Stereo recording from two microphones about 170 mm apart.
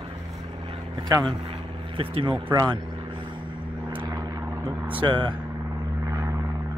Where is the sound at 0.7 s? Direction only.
25° right (ahead or behind).